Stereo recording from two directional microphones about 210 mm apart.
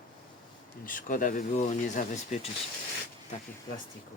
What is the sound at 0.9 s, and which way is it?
Speech, 40° left (ahead or behind).